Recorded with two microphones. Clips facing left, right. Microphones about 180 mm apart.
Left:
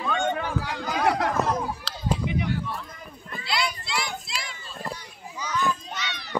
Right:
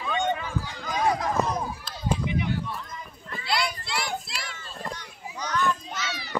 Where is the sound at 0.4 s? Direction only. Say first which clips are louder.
Left 4 dB; 70° left (ahead or behind).